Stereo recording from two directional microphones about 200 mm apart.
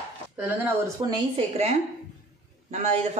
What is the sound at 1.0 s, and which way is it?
Speech, 25° right (ahead or behind).